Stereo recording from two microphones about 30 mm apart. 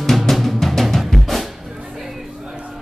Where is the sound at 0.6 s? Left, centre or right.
Centre.